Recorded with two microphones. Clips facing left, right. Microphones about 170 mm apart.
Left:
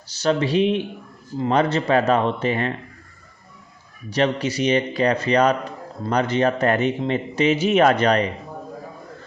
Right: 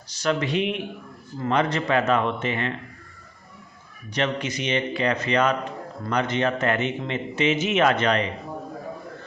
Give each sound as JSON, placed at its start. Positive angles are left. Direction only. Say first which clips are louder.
{"t": 0.2, "sound": "speech", "louder": "left 5 dB", "side_deg": 30}
{"t": 4.1, "sound": "speech", "louder": "left 5 dB", "side_deg": 35}